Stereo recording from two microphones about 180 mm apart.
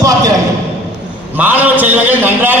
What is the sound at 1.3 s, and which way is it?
A man's voice, 10° right (ahead or behind).